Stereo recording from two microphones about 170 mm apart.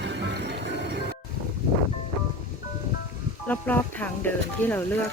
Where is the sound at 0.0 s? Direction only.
85° right.